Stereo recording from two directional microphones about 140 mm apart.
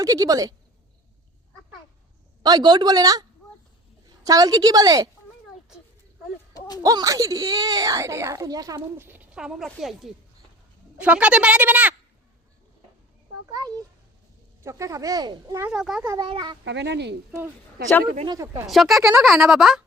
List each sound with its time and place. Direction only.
0.0 s speech: 25° right (ahead or behind)
2.4 s speech: 30° right (ahead or behind)
6.8 s speech: 25° right (ahead or behind)
13.5 s speech: 25° right (ahead or behind)
15.6 s speech: 5° right (ahead or behind)
16.2 s speech: 35° right (ahead or behind)
17.8 s speech: 90° right
18.3 s speech: 20° right (ahead or behind)
18.7 s speech: centre (ahead or behind)